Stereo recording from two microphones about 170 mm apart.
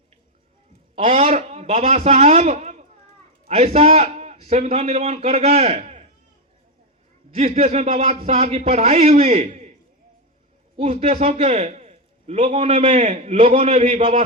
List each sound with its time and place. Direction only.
0.9 s a man's voice: 40° right (ahead or behind)
7.3 s a man's voice: 40° right (ahead or behind)
10.8 s a man's voice: 40° right (ahead or behind)